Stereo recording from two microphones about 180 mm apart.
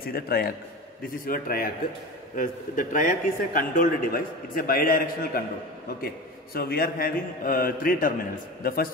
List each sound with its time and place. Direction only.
0.0 s a man's voice: 60° left (ahead or behind)